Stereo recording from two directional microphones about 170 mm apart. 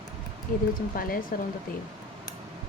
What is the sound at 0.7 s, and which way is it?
Speech, 55° left (ahead or behind).